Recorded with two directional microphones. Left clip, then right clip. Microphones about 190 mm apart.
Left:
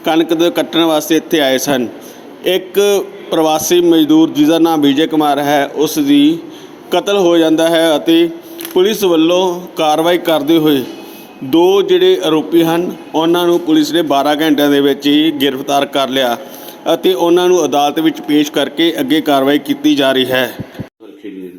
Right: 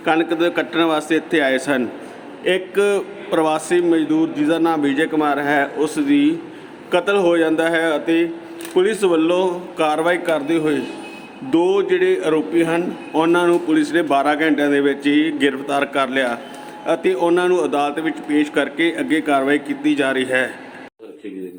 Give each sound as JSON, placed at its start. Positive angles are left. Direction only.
{"t": 0.0, "sound": "a man's voice", "side_deg": 20}